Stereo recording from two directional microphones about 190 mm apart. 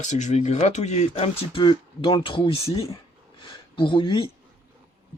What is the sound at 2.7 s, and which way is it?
Speech, 15° left (ahead or behind).